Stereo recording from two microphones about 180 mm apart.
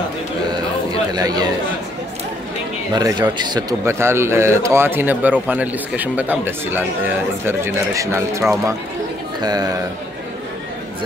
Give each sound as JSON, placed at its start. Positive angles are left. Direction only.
{"t": 1.1, "sound": "a man's voice", "side_deg": -20}
{"t": 2.9, "sound": "a man's voice", "side_deg": -20}